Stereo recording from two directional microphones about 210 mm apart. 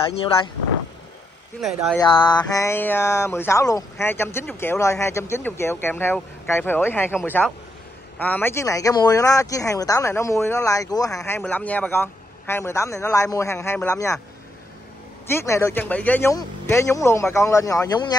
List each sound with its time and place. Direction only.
1.6 s speech: centre (ahead or behind)
2.0 s a sound: 20° left (ahead or behind)
2.5 s speech: 10° left (ahead or behind)
15.2 s speech: 10° left (ahead or behind)